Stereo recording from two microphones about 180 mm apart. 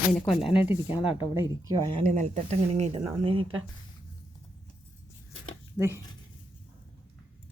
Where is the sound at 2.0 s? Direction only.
40° right (ahead or behind).